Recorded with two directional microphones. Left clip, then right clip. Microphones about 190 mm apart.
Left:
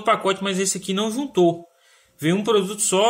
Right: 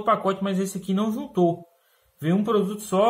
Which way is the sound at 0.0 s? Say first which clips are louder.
Left 2 dB; 40° left (ahead or behind).